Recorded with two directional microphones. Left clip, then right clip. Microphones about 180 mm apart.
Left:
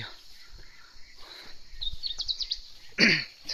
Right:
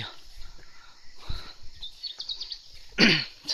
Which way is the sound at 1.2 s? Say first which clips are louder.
Right 3 dB; 15° right (ahead or behind).